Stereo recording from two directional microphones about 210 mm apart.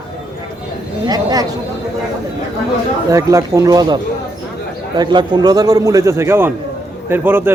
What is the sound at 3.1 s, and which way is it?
Speech, 15° right (ahead or behind).